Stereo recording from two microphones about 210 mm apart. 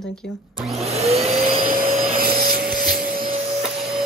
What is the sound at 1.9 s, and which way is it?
Vacuum cleaner, 30° right (ahead or behind).